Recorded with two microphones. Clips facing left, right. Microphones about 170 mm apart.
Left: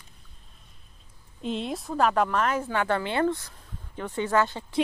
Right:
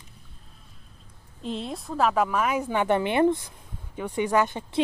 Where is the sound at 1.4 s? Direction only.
Centre (ahead or behind).